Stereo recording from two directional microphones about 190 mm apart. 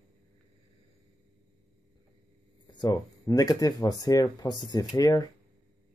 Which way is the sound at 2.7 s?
20° left (ahead or behind).